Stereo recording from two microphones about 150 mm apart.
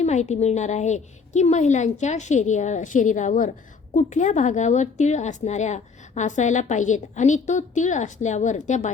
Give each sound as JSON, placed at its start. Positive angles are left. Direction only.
{"t": 0.0, "sound": "a woman's voice", "side_deg": 50}